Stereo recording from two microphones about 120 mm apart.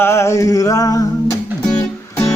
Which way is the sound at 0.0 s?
20° left (ahead or behind).